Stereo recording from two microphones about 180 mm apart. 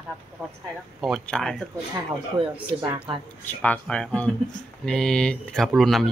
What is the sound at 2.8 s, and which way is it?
Speech, 30° right (ahead or behind).